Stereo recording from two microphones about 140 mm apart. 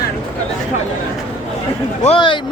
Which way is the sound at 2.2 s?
35° left (ahead or behind).